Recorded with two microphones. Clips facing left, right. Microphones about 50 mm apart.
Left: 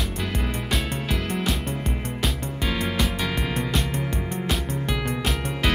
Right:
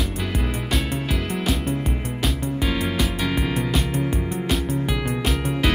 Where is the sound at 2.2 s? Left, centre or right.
Centre.